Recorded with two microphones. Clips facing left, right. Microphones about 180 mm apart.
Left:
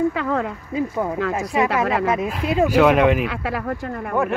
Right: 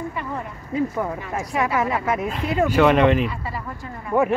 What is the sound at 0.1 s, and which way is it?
Speech, 90° left.